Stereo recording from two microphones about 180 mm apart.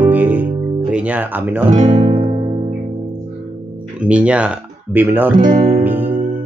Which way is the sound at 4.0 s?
5° right (ahead or behind).